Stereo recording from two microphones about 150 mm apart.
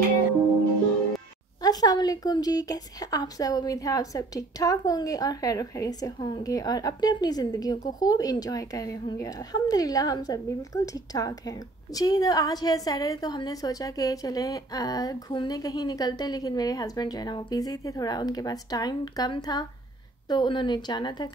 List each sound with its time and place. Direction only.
1.6 s a woman's voice: 25° left (ahead or behind)